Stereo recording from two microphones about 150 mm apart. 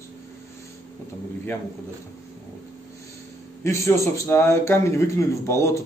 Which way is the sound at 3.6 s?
20° left (ahead or behind).